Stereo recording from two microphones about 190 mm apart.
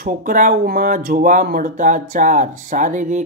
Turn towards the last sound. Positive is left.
turn(degrees=-40)  # may be behind; listen again after turning